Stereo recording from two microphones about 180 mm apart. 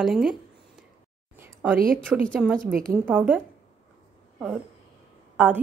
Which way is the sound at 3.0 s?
10° right (ahead or behind).